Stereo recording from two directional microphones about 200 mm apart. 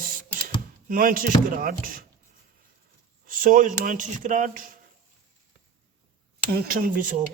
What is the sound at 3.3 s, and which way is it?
Speech, 40° right (ahead or behind).